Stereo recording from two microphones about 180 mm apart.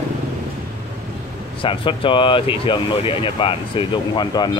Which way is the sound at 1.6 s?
30° left (ahead or behind).